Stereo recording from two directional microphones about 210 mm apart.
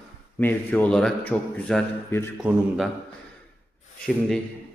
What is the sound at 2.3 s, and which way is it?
Speech, centre (ahead or behind).